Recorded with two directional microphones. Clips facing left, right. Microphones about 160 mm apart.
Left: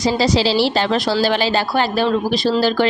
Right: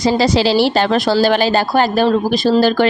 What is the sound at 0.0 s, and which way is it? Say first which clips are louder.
A woman's voice: right 3 dB; 55° right (ahead or behind).